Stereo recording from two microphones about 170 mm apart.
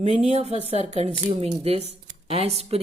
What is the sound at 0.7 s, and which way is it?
A woman's voice, 40° right (ahead or behind).